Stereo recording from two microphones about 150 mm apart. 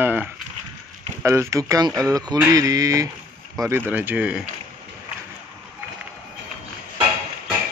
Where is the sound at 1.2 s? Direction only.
20° right (ahead or behind).